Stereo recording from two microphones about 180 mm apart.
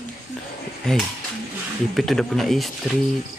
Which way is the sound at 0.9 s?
5° left (ahead or behind).